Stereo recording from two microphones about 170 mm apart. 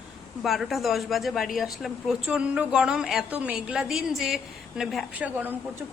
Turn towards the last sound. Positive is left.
turn(degrees=0)  # may be behind; listen again after turning